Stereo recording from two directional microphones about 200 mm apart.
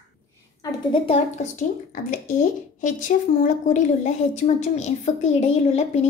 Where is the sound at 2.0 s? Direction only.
40° left (ahead or behind).